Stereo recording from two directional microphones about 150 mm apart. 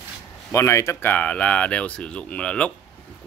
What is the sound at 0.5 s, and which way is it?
Speech, 20° left (ahead or behind).